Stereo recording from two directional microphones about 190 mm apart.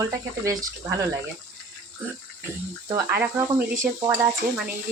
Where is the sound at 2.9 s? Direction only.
15° right (ahead or behind).